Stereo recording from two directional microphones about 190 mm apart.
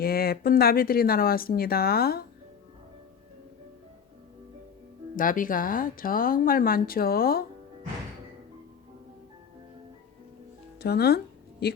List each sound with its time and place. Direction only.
0.0 s speech: 55° left (ahead or behind)
5.1 s speech: 45° left (ahead or behind)
10.8 s speech: 60° left (ahead or behind)